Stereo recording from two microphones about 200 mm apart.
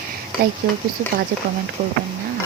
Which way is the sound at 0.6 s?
55° right (ahead or behind).